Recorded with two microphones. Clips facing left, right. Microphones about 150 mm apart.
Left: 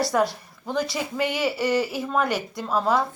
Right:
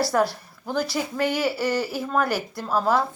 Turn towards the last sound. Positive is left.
turn(degrees=0)  # may be behind; listen again after turning